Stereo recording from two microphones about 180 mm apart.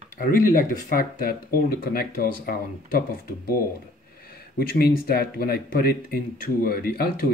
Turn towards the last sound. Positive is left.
turn(degrees=55)  # may be behind; listen again after turning